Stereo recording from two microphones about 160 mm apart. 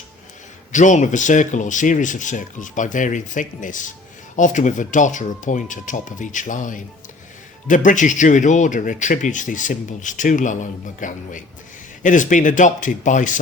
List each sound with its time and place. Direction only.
0.7 s speech: 50° left (ahead or behind)